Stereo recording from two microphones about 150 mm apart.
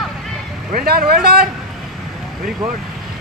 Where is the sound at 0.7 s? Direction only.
90° right.